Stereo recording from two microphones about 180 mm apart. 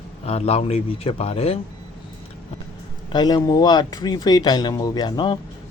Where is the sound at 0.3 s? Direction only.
35° left (ahead or behind).